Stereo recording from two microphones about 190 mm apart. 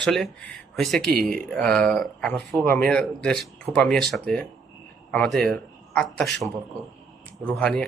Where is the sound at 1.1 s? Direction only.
50° right (ahead or behind).